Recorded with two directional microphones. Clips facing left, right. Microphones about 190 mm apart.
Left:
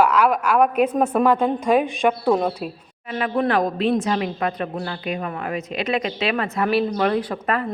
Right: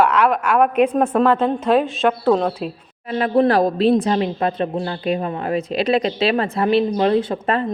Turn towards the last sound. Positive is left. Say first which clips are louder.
# right 4 dB
turn(degrees=-25)  # may be behind; listen again after turning